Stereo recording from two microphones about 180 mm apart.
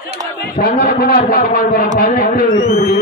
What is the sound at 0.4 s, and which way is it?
A man's voice, 60° left (ahead or behind).